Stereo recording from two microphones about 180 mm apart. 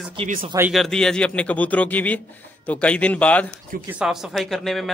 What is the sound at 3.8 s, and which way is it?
A man's voice, 5° right (ahead or behind).